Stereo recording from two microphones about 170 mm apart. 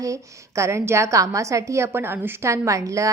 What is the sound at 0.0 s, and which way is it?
A woman's voice, 20° right (ahead or behind).